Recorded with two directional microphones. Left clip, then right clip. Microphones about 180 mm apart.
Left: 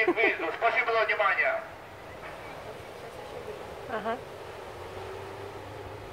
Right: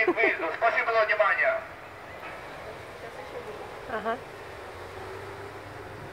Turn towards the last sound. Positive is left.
turn(degrees=-5)  # may be behind; listen again after turning